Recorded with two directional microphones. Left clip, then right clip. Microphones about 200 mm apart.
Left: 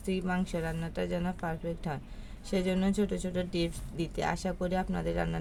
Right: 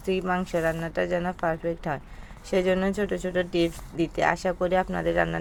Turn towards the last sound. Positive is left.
turn(degrees=-20)  # may be behind; listen again after turning